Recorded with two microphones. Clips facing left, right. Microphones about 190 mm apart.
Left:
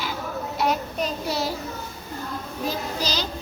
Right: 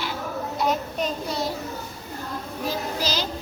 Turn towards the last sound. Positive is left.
turn(degrees=-5)  # may be behind; listen again after turning